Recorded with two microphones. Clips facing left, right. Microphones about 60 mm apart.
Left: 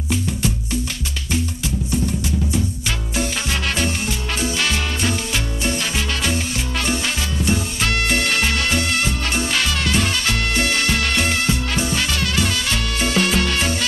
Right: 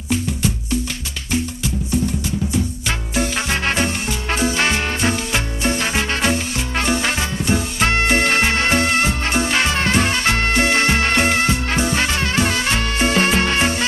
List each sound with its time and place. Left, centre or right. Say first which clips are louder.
3.2 s music: right 3 dB; right